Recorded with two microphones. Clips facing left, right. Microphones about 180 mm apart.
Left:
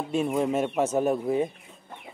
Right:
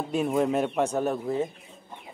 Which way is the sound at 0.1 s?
Centre (ahead or behind).